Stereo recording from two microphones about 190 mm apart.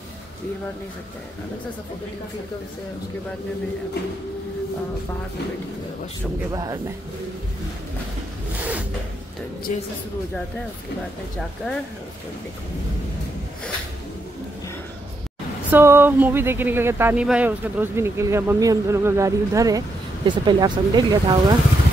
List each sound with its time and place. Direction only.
6.5 s speech: 20° right (ahead or behind)
8.5 s a sound: 10° right (ahead or behind)
15.7 s speech: 10° right (ahead or behind)